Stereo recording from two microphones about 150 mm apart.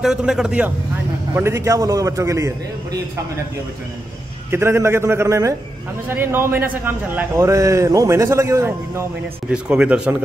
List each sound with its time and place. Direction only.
0.0 s a man's voice: 5° right (ahead or behind); by 3.0 s 20° right (ahead or behind)
4.5 s a man's voice: 15° right (ahead or behind)
9.5 s a man's voice: 5° right (ahead or behind)